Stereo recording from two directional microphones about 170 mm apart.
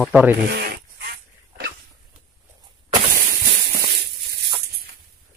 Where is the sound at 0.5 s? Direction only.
70° right (ahead or behind).